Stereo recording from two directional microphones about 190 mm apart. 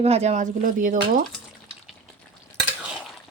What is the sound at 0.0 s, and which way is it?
Speech, 35° right (ahead or behind).